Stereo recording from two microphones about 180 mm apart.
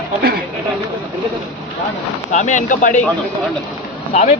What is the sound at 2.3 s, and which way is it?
Speech, 45° left (ahead or behind).